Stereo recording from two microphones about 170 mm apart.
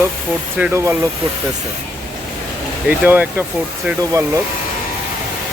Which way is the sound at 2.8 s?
10° right (ahead or behind).